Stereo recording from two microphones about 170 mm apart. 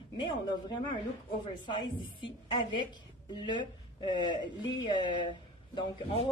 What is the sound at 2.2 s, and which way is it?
Speech, 30° left (ahead or behind).